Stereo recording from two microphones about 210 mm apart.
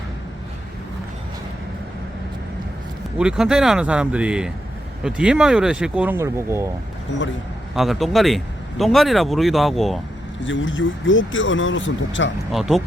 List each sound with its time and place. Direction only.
3.2 s speech: 5° right (ahead or behind)
7.8 s speech: centre (ahead or behind)
10.4 s speech: 65° left (ahead or behind)
12.5 s speech: centre (ahead or behind)